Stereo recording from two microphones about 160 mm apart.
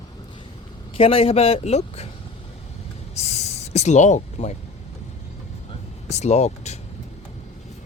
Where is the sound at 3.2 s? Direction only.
40° left (ahead or behind).